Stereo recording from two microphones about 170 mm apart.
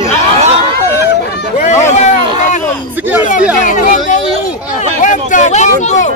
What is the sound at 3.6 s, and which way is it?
Speech, 45° left (ahead or behind).